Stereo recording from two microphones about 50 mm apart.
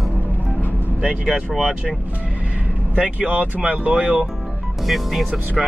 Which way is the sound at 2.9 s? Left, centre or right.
Right.